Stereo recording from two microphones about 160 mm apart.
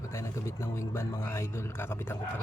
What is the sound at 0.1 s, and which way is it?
A man's voice, 15° left (ahead or behind).